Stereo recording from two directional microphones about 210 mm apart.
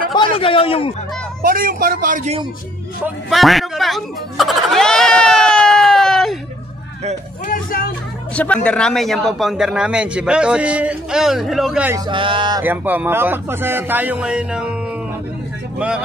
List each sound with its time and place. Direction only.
0.1 s a man's voice: 25° left (ahead or behind)
1.4 s a man's voice: 40° right (ahead or behind)
3.3 s a sound: centre (ahead or behind)
7.4 s speech: 40° left (ahead or behind)
8.6 s a man's voice: 5° left (ahead or behind)
12.1 s speech: 25° right (ahead or behind)
12.6 s speech: 10° right (ahead or behind)